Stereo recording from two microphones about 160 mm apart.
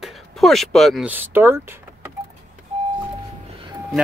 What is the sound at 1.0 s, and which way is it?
Speech, 10° right (ahead or behind).